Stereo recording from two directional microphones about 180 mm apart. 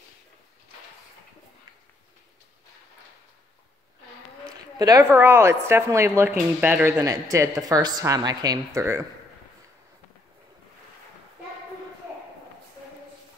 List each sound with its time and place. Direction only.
4.7 s a woman's voice: 20° right (ahead or behind)